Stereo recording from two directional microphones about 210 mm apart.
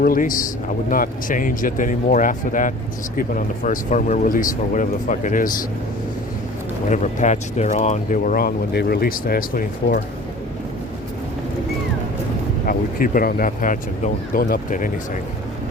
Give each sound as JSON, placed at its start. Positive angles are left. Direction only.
{"t": 0.0, "sound": "speech", "side_deg": 40}
{"t": 6.9, "sound": "speech", "side_deg": 35}
{"t": 12.6, "sound": "speech", "side_deg": 40}